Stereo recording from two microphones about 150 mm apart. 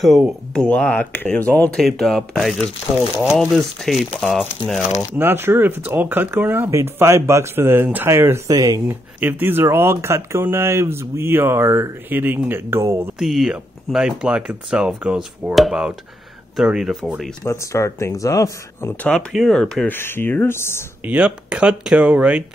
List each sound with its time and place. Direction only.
0.6 s speech: 5° left (ahead or behind)
5.1 s speech: 15° right (ahead or behind)
13.2 s speech: centre (ahead or behind)
17.4 s speech: 20° left (ahead or behind)
19.0 s speech: 5° left (ahead or behind)
21.0 s speech: 10° right (ahead or behind)